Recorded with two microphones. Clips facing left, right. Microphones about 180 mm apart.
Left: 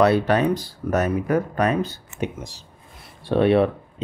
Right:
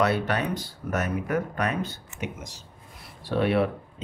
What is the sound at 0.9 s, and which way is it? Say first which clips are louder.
Speech: left 6 dB; 35° left (ahead or behind).